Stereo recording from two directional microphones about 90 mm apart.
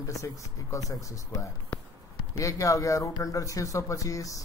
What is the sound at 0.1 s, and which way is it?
Speech, 35° left (ahead or behind).